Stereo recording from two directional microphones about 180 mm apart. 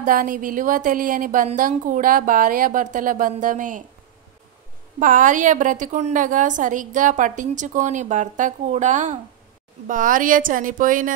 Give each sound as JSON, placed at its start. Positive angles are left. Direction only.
{"t": 0.0, "sound": "a woman's voice", "side_deg": -50}
{"t": 4.9, "sound": "a woman's voice", "side_deg": -45}